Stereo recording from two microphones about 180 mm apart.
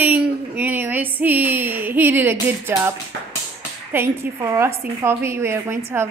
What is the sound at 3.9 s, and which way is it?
A woman's voice, 10° right (ahead or behind).